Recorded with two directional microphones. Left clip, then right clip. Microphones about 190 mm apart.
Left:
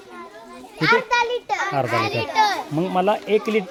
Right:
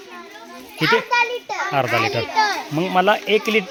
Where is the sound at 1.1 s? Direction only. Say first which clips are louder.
Right 1 dB; 15° left (ahead or behind).